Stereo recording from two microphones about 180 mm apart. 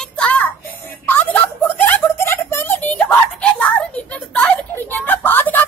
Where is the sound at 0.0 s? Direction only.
5° left (ahead or behind).